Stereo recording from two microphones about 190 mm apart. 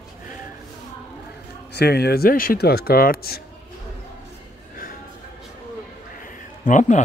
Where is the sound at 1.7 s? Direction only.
60° left (ahead or behind).